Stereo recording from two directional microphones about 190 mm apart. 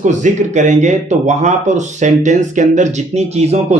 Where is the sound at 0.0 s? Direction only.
40° right (ahead or behind).